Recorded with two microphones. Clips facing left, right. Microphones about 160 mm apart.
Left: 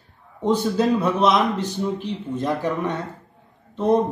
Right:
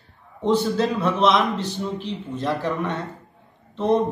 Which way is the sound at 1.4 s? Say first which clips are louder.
Left 1 dB; 45° left (ahead or behind).